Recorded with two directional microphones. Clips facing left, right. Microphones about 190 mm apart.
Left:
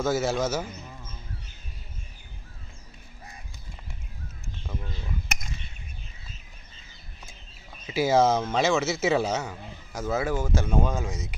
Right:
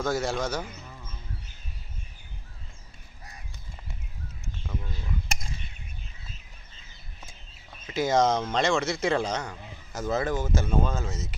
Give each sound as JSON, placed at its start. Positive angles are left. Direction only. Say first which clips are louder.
{"t": 0.0, "sound": "a man's voice", "louder": "left 3 dB", "side_deg": 5}
{"t": 7.7, "sound": "speech", "louder": "left 2 dB", "side_deg": 5}